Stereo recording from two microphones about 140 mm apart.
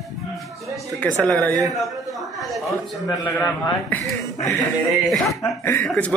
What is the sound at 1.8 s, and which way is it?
Speech, centre (ahead or behind).